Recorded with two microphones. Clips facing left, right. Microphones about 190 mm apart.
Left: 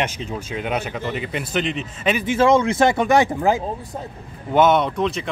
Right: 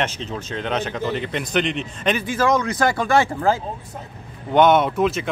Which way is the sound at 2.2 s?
25° left (ahead or behind).